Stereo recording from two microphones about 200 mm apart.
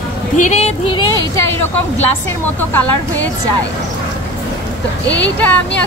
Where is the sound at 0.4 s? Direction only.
35° left (ahead or behind).